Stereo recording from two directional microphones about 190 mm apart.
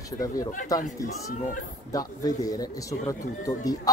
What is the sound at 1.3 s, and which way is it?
Speech, 45° left (ahead or behind).